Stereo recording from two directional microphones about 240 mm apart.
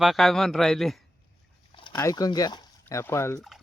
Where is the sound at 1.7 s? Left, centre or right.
Centre.